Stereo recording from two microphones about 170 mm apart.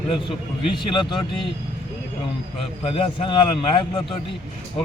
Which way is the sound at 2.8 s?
30° left (ahead or behind).